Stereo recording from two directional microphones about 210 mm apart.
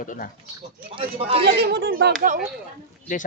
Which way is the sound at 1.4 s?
50° right (ahead or behind).